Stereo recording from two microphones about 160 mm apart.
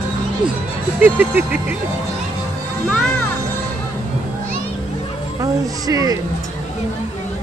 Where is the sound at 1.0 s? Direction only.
10° right (ahead or behind).